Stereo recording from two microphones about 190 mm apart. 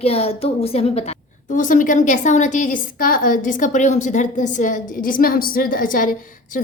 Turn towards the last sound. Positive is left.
turn(degrees=45)  # may be behind; listen again after turning